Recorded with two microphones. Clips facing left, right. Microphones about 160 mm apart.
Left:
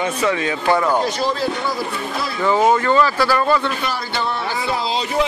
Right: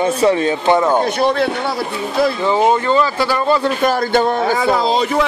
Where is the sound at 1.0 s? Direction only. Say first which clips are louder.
Right 5 dB; 60° right (ahead or behind).